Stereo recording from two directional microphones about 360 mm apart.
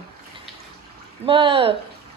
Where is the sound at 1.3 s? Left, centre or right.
Centre.